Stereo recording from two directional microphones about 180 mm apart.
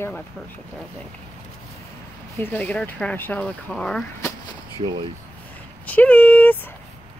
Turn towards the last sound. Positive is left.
turn(degrees=10)  # may be behind; listen again after turning